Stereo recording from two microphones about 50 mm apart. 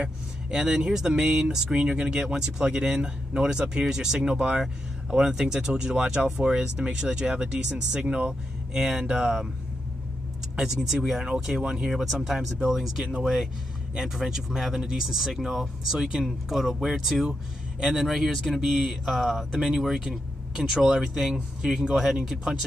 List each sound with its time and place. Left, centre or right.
0.0 s speech: centre
10.6 s speech: centre
11.9 s speech: centre
13.2 s a sound: centre
14.1 s speech: centre
18.6 s a sound: centre
19.5 s speech: centre